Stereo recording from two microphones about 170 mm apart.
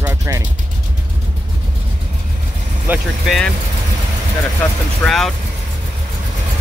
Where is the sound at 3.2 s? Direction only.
Centre (ahead or behind).